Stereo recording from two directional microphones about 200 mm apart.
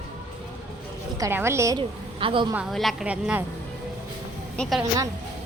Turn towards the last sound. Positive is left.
turn(degrees=0)  # may be behind; listen again after turning